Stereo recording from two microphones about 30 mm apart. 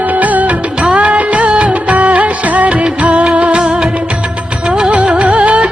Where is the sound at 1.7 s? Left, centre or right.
Right.